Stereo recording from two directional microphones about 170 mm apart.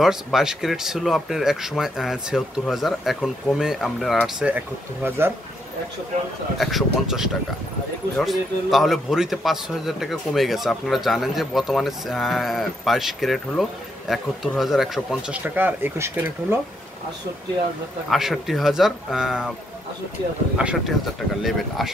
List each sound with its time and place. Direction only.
0.0 s a man's voice: centre (ahead or behind)
6.6 s a man's voice: centre (ahead or behind)
18.1 s a man's voice: centre (ahead or behind)
20.5 s a man's voice: 5° right (ahead or behind)